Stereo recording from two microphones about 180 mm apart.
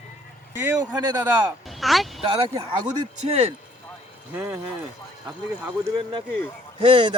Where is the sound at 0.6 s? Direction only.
15° right (ahead or behind).